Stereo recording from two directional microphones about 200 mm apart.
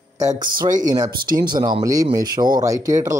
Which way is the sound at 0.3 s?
40° right (ahead or behind).